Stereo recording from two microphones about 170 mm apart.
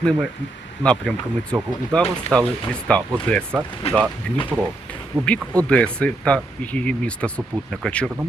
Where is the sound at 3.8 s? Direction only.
35° left (ahead or behind).